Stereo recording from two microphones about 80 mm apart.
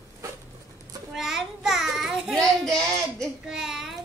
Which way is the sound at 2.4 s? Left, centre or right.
Centre.